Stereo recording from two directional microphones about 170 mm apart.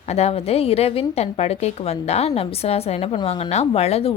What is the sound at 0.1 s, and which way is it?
Speech, 40° left (ahead or behind).